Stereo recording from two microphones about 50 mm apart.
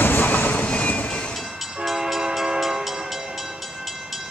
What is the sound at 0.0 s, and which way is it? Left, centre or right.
Vehicle, left.